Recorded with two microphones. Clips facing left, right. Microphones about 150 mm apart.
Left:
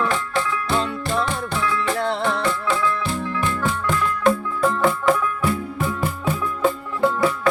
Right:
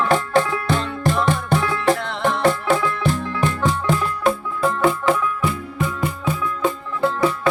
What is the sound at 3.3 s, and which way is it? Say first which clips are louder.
Music: right 2 dB; 40° right (ahead or behind).